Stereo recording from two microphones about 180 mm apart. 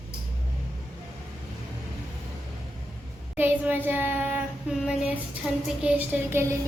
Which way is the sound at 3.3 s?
10° right (ahead or behind).